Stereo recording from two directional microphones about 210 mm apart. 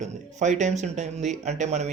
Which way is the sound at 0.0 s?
35° right (ahead or behind).